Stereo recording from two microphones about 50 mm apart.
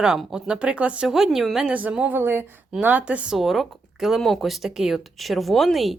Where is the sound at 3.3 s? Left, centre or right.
Centre.